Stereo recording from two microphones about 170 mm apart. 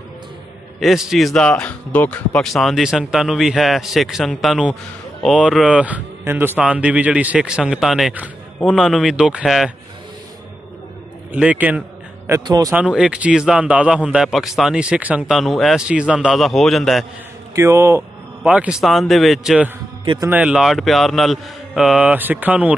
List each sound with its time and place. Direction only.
0.7 s a man's voice: centre (ahead or behind)
11.3 s a man's voice: 10° right (ahead or behind)
12.3 s speech: 20° right (ahead or behind)
12.7 s a man's voice: 5° right (ahead or behind)
17.6 s a man's voice: 15° right (ahead or behind)